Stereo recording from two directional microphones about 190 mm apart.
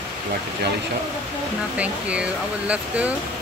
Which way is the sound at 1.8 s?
5° right (ahead or behind).